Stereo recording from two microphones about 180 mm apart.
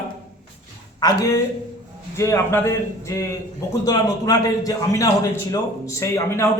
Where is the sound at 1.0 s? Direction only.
20° left (ahead or behind).